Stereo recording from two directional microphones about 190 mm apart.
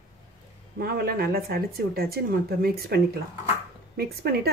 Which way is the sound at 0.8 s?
50° right (ahead or behind).